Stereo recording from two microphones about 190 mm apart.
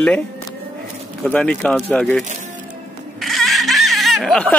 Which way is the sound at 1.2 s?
5° left (ahead or behind).